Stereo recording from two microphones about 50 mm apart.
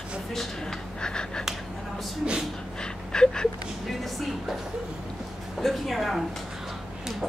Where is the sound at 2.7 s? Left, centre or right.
Centre.